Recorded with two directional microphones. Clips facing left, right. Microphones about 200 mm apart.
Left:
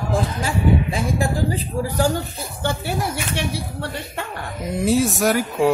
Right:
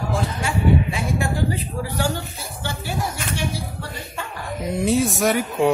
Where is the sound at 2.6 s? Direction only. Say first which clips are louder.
Left 4 dB; 60° left (ahead or behind).